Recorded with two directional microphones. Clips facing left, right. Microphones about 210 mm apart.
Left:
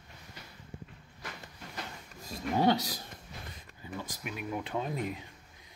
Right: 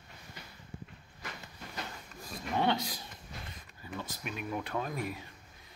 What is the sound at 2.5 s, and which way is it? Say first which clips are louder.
Speech: left 3 dB; 35° left (ahead or behind).